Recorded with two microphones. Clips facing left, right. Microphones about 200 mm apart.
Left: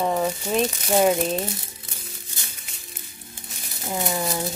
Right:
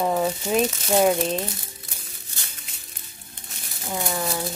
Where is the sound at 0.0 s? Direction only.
5° right (ahead or behind).